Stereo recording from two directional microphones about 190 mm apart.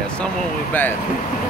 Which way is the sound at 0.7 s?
10° left (ahead or behind).